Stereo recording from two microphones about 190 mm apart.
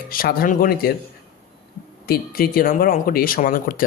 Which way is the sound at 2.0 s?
55° left (ahead or behind).